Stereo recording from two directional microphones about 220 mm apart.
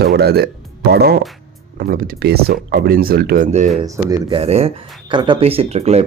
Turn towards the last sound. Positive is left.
turn(degrees=-30)  # may be behind; listen again after turning